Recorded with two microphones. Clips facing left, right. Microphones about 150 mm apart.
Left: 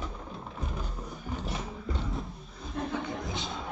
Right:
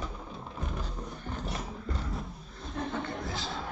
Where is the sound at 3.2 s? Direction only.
20° left (ahead or behind).